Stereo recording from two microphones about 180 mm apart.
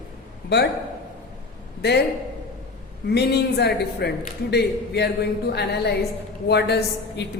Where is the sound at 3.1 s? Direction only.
65° left (ahead or behind).